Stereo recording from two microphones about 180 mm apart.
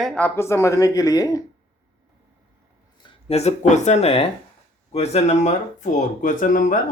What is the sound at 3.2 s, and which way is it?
Speech, 35° left (ahead or behind).